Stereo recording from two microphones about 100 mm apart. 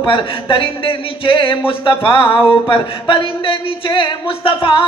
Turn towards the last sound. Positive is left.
turn(degrees=60)  # may be behind; listen again after turning